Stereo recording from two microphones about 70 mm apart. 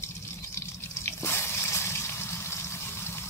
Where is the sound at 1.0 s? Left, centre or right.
Left.